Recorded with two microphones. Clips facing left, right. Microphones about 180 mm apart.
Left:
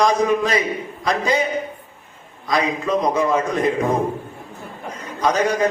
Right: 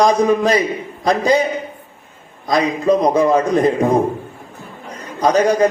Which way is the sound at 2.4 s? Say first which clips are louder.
Right 6 dB; 35° right (ahead or behind).